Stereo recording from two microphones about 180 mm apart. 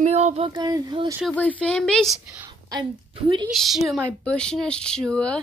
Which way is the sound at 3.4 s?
Centre (ahead or behind).